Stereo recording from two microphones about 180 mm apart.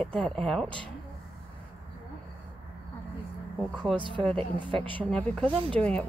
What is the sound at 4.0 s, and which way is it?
Speech, 25° right (ahead or behind).